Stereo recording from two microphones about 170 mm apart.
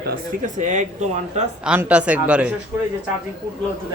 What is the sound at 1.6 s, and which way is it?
Speech, 5° right (ahead or behind).